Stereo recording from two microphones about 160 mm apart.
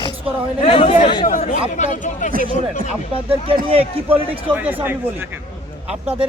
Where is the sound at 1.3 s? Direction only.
60° left (ahead or behind).